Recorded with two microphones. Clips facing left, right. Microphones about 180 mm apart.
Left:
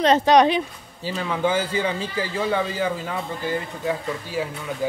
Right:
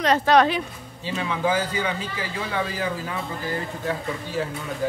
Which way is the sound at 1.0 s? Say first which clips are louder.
Left 1 dB; 35° left (ahead or behind).